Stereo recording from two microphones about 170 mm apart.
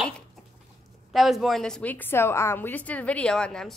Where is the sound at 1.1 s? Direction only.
Centre (ahead or behind).